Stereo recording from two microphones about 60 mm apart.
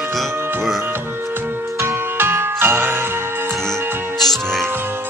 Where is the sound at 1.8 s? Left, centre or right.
Right.